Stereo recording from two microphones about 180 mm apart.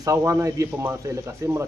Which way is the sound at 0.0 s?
20° right (ahead or behind).